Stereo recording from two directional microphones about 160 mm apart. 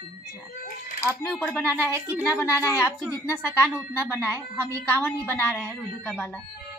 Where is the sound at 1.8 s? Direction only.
15° right (ahead or behind).